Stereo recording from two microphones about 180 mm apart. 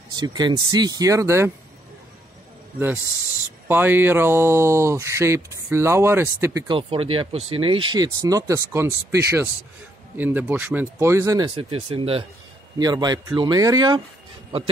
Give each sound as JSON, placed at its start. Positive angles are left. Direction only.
{"t": 0.1, "sound": "speech", "side_deg": -25}
{"t": 3.6, "sound": "speech", "side_deg": -10}
{"t": 6.7, "sound": "speech", "side_deg": -30}